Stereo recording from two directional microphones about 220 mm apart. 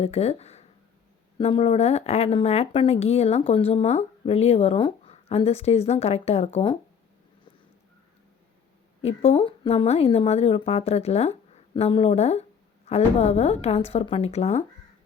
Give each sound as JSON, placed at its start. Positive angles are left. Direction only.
{"t": 0.0, "sound": "speech", "side_deg": 30}
{"t": 9.0, "sound": "speech", "side_deg": 30}